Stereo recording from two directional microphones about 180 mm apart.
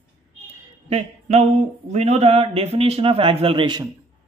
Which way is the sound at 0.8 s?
35° right (ahead or behind).